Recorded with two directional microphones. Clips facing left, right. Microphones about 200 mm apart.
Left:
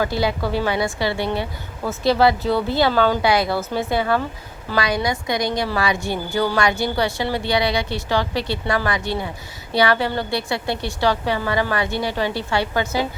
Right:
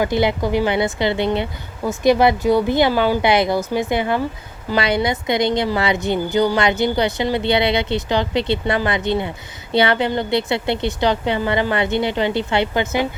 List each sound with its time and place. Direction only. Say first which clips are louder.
0.0 s a woman's voice: right 3 dB; 20° right (ahead or behind)